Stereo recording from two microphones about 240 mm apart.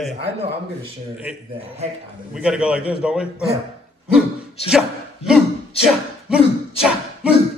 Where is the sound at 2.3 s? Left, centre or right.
Centre.